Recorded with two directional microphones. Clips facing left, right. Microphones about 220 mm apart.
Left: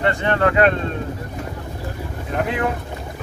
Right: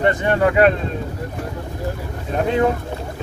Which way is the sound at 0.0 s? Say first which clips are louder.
Right 2 dB; 15° right (ahead or behind).